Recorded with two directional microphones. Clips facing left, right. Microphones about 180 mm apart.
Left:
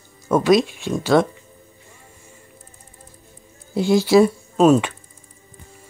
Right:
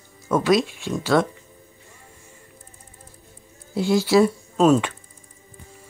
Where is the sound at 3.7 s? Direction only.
20° left (ahead or behind).